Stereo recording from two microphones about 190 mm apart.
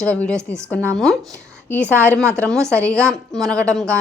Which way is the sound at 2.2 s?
15° right (ahead or behind).